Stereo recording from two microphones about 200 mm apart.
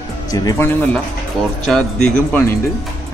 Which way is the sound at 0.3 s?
20° left (ahead or behind).